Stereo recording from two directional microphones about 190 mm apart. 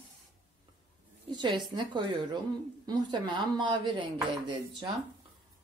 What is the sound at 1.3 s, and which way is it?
Speech, 25° right (ahead or behind).